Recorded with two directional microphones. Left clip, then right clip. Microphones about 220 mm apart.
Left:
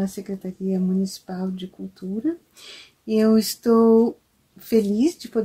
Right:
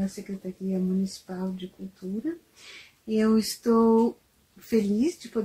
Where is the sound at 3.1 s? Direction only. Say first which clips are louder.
Left 5 dB; 45° left (ahead or behind).